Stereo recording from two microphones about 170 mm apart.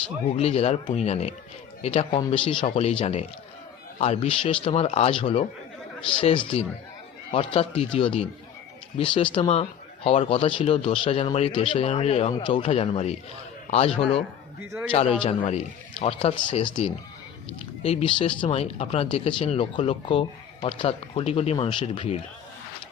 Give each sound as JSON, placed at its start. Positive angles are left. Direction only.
{"t": 0.3, "sound": "speech", "side_deg": 35}